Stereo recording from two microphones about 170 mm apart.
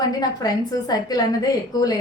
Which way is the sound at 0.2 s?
20° left (ahead or behind).